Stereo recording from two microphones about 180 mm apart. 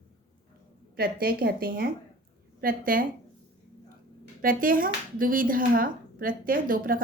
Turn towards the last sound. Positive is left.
turn(degrees=-50)  # may be behind; listen again after turning